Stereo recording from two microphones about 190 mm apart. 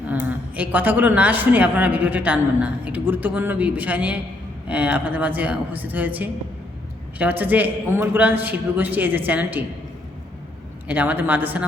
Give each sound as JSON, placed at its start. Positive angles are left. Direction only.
{"t": 0.1, "sound": "a woman's voice", "side_deg": -10}
{"t": 10.8, "sound": "a woman's voice", "side_deg": -10}